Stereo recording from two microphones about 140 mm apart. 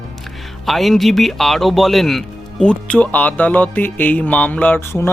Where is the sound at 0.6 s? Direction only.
Centre (ahead or behind).